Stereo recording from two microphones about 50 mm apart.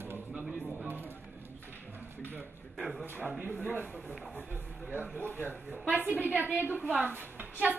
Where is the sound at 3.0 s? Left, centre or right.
Right.